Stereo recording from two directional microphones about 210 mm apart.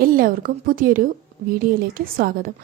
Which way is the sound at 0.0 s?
45° right (ahead or behind).